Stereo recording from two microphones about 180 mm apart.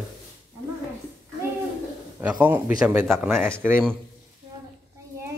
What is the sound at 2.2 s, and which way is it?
Speech, 10° right (ahead or behind).